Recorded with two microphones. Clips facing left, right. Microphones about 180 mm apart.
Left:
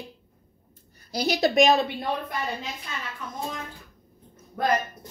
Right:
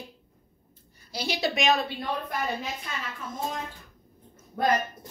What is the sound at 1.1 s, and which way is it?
Speech, 40° left (ahead or behind).